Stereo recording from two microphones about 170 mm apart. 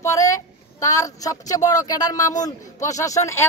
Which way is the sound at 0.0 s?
20° left (ahead or behind).